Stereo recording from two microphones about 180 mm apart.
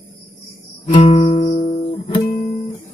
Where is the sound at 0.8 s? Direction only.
35° left (ahead or behind).